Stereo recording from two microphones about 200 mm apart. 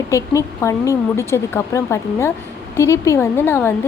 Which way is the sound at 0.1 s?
15° left (ahead or behind).